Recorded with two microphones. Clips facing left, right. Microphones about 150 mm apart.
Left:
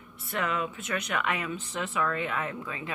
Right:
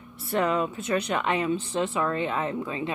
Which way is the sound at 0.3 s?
35° right (ahead or behind).